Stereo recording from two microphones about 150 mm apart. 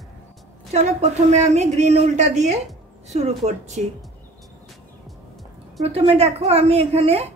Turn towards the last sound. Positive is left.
turn(degrees=-45)  # may be behind; listen again after turning